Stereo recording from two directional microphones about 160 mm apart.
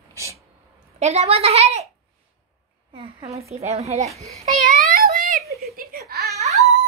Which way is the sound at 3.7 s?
45° right (ahead or behind).